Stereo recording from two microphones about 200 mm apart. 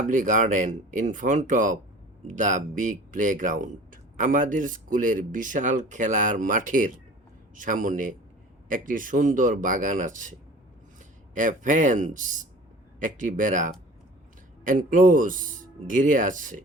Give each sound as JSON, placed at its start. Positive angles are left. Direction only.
{"t": 0.1, "sound": "speech", "side_deg": -40}
{"t": 11.3, "sound": "speech", "side_deg": -40}